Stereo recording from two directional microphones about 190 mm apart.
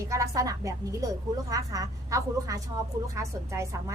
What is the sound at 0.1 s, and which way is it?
A woman's voice, 15° right (ahead or behind).